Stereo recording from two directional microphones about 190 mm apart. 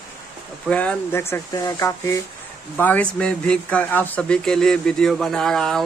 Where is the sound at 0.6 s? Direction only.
5° left (ahead or behind).